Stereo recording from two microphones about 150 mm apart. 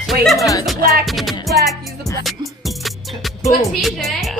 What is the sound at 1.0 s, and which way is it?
Speech, centre (ahead or behind).